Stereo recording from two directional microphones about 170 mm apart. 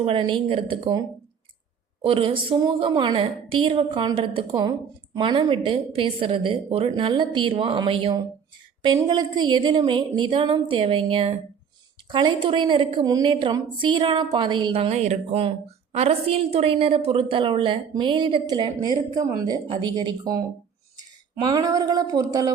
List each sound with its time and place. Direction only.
0.0 s a woman's voice: 30° right (ahead or behind)
2.0 s a woman's voice: 30° right (ahead or behind)